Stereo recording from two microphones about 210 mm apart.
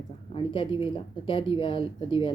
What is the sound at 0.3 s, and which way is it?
Speech, 25° left (ahead or behind).